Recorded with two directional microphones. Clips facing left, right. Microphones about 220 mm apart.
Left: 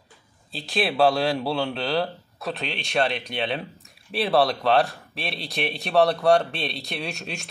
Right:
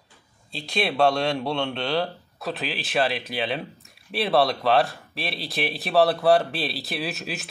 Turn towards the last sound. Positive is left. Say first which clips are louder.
# right 2 dB
turn(degrees=-5)  # may be behind; listen again after turning